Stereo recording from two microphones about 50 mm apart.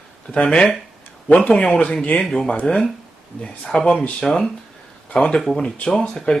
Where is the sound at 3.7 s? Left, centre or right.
Centre.